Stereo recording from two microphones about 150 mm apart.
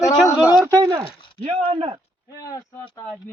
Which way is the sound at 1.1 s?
35° left (ahead or behind).